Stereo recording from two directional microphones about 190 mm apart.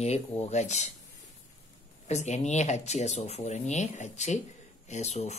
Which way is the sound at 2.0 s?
35° left (ahead or behind).